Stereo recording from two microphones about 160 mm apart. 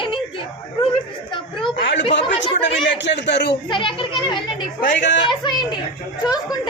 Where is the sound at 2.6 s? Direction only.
90° left.